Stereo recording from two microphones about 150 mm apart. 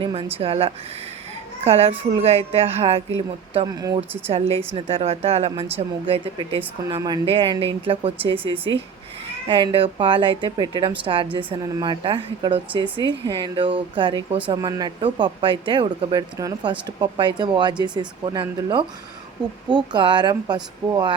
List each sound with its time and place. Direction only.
0.0 s speech: 35° right (ahead or behind)
3.7 s speech: 25° right (ahead or behind)
4.3 s a woman's voice: 40° right (ahead or behind)
6.8 s speech: 25° right (ahead or behind)
9.5 s speech: 35° right (ahead or behind)